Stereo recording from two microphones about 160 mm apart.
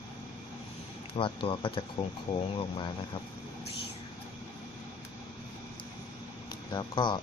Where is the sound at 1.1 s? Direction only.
35° left (ahead or behind).